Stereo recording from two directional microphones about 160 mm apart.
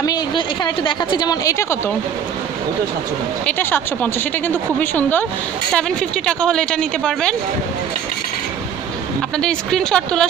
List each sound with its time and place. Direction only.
0.0 s a woman's voice: 25° left (ahead or behind)
3.4 s speech: 10° left (ahead or behind)
9.4 s speech: 5° left (ahead or behind)